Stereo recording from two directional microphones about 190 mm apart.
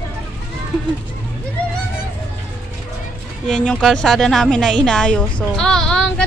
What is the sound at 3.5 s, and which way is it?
A woman's voice, 5° left (ahead or behind).